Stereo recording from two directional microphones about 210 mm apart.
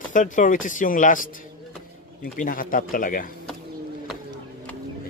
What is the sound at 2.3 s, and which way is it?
Speech, 40° left (ahead or behind).